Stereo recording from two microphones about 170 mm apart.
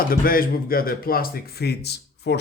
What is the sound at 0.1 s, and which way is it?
A man's voice, 60° left (ahead or behind).